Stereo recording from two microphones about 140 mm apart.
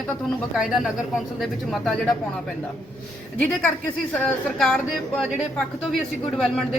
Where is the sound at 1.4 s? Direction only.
Centre (ahead or behind).